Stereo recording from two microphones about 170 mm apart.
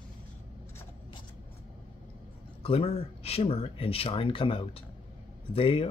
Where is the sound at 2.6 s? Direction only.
35° left (ahead or behind).